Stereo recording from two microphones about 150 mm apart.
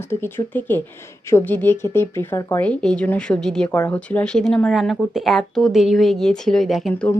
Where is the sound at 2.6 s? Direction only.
5° left (ahead or behind).